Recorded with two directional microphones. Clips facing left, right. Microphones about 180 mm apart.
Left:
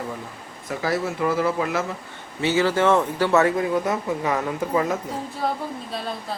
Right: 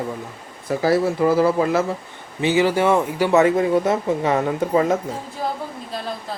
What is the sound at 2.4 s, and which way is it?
Speech, 15° right (ahead or behind).